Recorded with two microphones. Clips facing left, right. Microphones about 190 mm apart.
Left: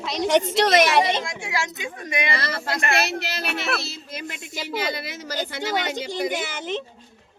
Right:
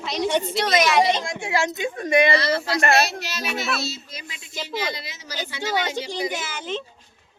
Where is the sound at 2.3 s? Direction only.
50° left (ahead or behind).